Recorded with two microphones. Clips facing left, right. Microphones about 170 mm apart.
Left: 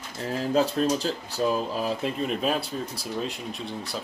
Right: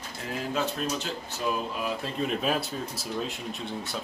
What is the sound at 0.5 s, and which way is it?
Speech, 35° left (ahead or behind).